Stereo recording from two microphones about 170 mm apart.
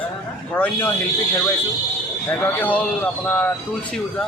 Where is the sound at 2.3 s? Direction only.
10° left (ahead or behind).